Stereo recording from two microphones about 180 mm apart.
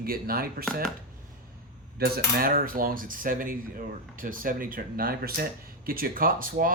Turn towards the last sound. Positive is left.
turn(degrees=-50)  # may be behind; listen again after turning